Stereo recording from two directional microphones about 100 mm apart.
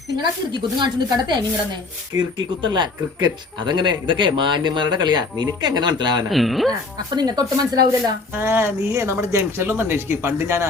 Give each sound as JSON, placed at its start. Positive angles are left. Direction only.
{"t": 0.2, "sound": "speech", "side_deg": -50}
{"t": 2.6, "sound": "speech", "side_deg": -50}
{"t": 6.3, "sound": "a woman's voice", "side_deg": 0}
{"t": 7.2, "sound": "speech", "side_deg": -45}
{"t": 8.4, "sound": "speech", "side_deg": -25}